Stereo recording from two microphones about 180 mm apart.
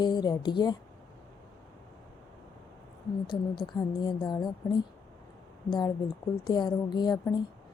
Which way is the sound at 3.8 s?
20° left (ahead or behind).